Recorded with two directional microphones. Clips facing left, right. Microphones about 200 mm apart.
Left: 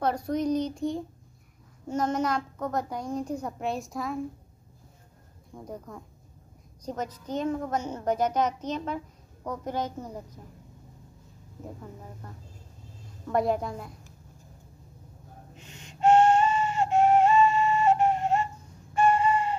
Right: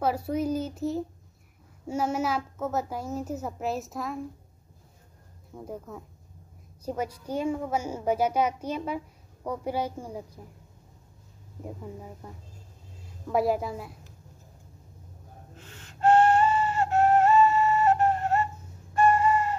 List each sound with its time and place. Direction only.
0.0 s a woman's voice: 5° right (ahead or behind)
5.5 s a woman's voice: 5° right (ahead or behind)
11.8 s a woman's voice: 10° right (ahead or behind)
15.5 s music: 15° left (ahead or behind)
17.9 s flute: 20° left (ahead or behind)
18.9 s chicken: 20° left (ahead or behind)